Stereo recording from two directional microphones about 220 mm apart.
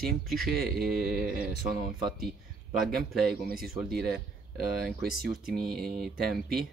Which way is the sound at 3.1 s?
Centre (ahead or behind).